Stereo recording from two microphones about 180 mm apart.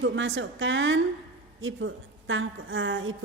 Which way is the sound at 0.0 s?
90° right.